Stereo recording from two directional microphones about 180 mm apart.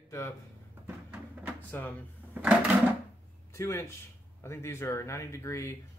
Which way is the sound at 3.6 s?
15° left (ahead or behind).